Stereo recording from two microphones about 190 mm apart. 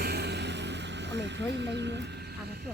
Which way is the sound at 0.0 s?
60° right (ahead or behind).